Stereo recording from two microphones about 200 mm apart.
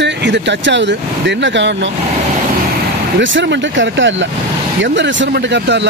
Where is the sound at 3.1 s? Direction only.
65° right (ahead or behind).